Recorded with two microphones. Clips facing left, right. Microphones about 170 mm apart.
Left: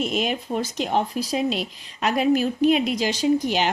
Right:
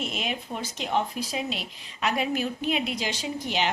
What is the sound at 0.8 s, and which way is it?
Speech, 40° left (ahead or behind).